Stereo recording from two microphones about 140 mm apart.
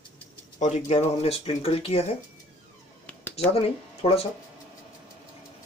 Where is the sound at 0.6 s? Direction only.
55° left (ahead or behind).